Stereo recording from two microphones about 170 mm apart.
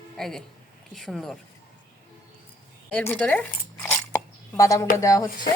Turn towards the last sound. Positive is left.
turn(degrees=20)  # may be behind; listen again after turning